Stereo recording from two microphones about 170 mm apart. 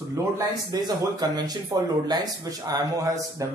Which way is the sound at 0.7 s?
25° right (ahead or behind).